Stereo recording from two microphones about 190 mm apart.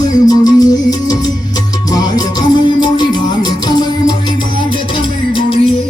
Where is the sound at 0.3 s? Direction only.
20° left (ahead or behind).